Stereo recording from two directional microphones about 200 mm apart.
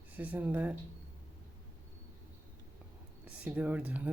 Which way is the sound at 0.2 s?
10° right (ahead or behind).